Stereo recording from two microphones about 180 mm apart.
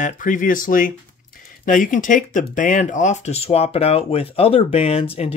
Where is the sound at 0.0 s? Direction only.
45° left (ahead or behind).